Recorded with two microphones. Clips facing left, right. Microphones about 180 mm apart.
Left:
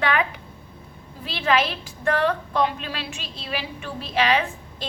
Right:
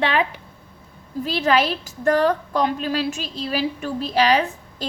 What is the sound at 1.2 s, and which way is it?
A woman's voice, 40° right (ahead or behind).